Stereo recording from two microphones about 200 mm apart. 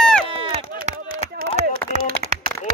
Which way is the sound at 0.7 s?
45° right (ahead or behind).